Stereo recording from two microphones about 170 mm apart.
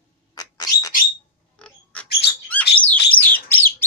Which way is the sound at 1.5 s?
5° left (ahead or behind).